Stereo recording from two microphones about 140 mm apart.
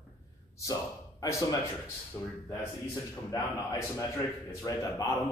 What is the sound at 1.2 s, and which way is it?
Speech, 25° left (ahead or behind).